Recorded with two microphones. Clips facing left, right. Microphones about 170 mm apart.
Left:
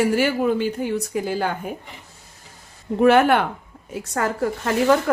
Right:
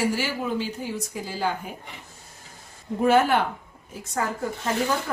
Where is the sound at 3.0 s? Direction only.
65° left (ahead or behind).